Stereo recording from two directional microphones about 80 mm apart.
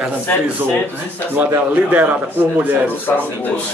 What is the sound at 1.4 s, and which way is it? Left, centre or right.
A man's voice, right.